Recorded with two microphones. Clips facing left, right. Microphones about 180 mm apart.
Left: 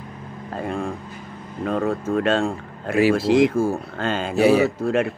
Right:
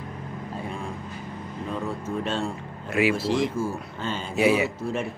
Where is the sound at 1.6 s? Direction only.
70° left (ahead or behind).